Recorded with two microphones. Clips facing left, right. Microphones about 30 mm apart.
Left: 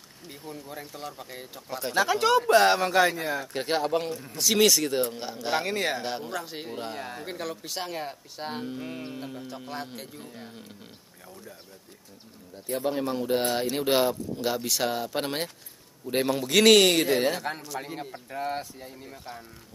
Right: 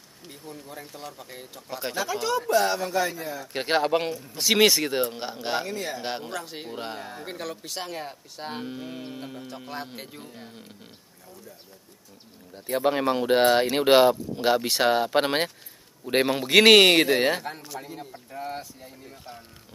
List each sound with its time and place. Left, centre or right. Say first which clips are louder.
0.3 s speech: left 1 dB; centre
2.0 s speech: left 5 dB; left
3.5 s a man's voice: right 5 dB; right
5.7 s speech: left 4 dB; left
6.0 s a man's voice: right 1 dB; right
6.3 s speech: even; centre
7.0 s speech: left 1 dB; centre
7.2 s speech: even; centre
8.5 s speech: even; centre
12.6 s speech: right 5 dB; right
13.7 s a man's voice: right 6 dB; right
17.7 s speech: left 2 dB; left